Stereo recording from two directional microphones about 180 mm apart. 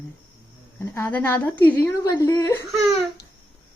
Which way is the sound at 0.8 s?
10° left (ahead or behind).